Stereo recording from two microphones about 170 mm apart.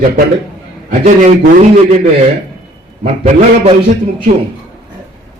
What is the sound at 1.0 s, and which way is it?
Speech, 45° right (ahead or behind).